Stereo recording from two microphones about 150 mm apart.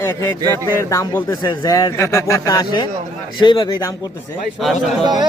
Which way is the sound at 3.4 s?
30° left (ahead or behind).